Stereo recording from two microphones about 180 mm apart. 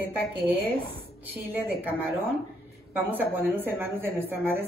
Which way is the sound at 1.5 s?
10° right (ahead or behind).